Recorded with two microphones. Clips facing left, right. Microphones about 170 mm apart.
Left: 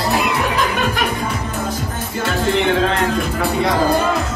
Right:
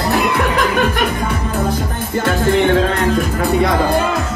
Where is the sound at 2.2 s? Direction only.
45° right (ahead or behind).